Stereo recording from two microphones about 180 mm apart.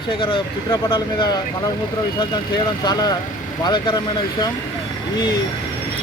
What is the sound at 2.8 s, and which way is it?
Speech, 20° left (ahead or behind).